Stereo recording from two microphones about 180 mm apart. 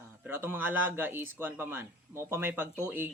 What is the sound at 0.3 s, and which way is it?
Speech, 10° right (ahead or behind).